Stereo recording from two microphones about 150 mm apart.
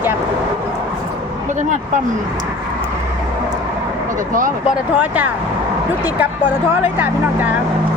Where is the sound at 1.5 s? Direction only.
55° right (ahead or behind).